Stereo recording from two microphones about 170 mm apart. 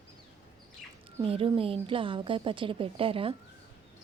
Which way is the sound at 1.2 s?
35° right (ahead or behind).